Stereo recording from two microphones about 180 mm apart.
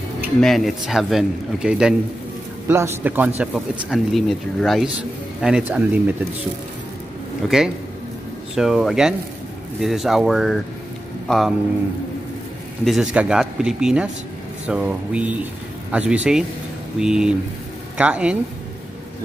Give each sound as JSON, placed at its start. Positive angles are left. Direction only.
{"t": 0.4, "sound": "speech", "side_deg": 0}
{"t": 7.4, "sound": "speech", "side_deg": -5}
{"t": 12.8, "sound": "speech", "side_deg": -5}